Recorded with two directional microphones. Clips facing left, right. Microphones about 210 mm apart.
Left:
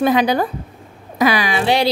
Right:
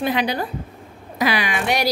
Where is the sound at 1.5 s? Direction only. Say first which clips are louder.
Left 5 dB; 30° left (ahead or behind).